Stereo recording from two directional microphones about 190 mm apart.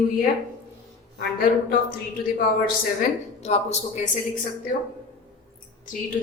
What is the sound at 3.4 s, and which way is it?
Speech, 35° left (ahead or behind).